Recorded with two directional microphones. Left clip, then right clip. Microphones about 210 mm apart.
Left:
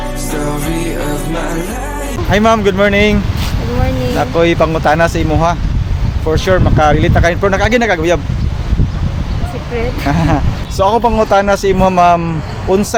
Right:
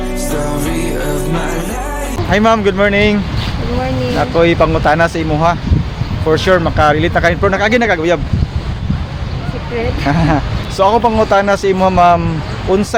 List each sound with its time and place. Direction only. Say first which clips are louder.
0.3 s music: even; centre (ahead or behind)
2.3 s speech: left 1 dB; 5° left (ahead or behind)
4.2 s speech: even; 5° left (ahead or behind)
9.7 s speech: even; 5° left (ahead or behind)